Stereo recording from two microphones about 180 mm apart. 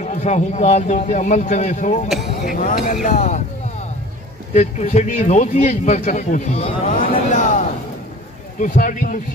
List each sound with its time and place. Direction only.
0.0 s a man's voice: 40° left (ahead or behind)
2.0 s a sound: centre (ahead or behind)
2.5 s speech: 50° left (ahead or behind)
4.6 s a man's voice: 40° left (ahead or behind)